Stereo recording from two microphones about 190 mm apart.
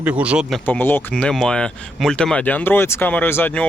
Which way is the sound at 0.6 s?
10° left (ahead or behind).